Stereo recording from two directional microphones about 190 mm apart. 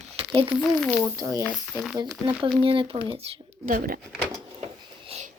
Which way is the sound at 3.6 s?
45° right (ahead or behind).